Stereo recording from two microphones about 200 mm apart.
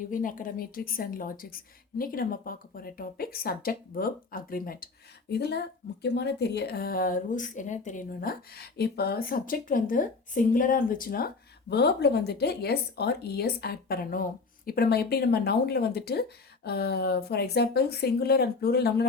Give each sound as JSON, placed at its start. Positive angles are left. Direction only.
{"t": 0.1, "sound": "speech", "side_deg": 45}
{"t": 11.7, "sound": "speech", "side_deg": 55}